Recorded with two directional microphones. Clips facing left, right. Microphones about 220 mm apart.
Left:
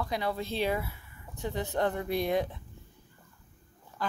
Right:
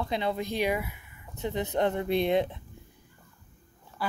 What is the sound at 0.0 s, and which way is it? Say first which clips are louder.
Speech: right 2 dB; 25° right (ahead or behind).